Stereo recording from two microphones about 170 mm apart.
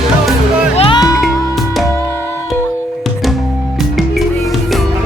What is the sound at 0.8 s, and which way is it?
Music, 25° left (ahead or behind).